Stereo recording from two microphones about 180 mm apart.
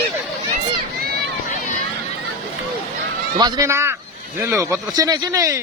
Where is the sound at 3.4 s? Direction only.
20° right (ahead or behind).